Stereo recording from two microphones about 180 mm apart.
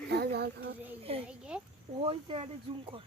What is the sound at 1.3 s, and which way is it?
Speech, 5° right (ahead or behind).